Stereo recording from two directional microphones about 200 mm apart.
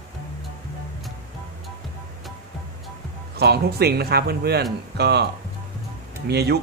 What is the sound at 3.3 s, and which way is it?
A man's voice, 55° right (ahead or behind).